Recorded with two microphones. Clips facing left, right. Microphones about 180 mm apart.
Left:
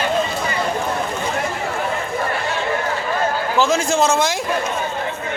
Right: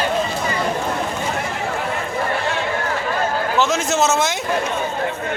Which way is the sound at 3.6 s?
Centre (ahead or behind).